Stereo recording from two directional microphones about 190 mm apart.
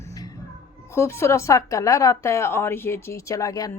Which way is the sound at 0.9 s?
15° left (ahead or behind).